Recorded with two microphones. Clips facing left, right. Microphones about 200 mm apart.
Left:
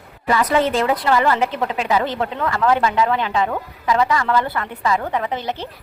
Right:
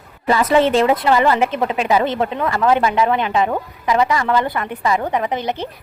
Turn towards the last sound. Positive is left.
turn(degrees=-20)  # may be behind; listen again after turning